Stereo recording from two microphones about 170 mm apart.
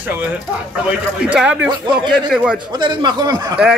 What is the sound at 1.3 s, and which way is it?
Speech, 5° right (ahead or behind).